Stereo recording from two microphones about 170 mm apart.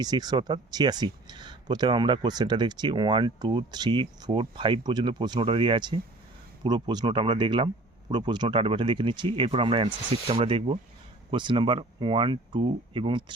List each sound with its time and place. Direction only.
0.0 s speech: 25° right (ahead or behind)